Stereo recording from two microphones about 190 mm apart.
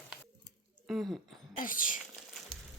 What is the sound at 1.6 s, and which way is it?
Speech, 45° left (ahead or behind).